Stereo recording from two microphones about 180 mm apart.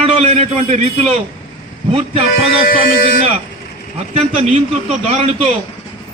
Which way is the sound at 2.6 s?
55° left (ahead or behind).